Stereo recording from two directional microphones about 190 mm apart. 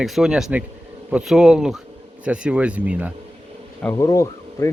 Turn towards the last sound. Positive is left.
turn(degrees=15)  # may be behind; listen again after turning